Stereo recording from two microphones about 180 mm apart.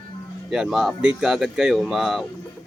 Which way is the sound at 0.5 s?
5° right (ahead or behind).